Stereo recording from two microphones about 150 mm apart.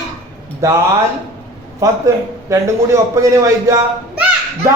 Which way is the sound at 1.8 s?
20° right (ahead or behind).